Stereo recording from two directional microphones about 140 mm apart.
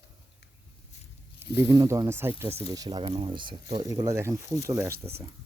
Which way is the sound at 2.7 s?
30° right (ahead or behind).